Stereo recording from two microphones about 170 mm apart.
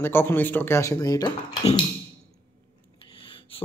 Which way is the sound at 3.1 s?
30° left (ahead or behind).